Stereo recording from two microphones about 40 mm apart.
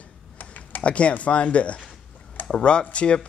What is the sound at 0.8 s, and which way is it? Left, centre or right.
Speech, left.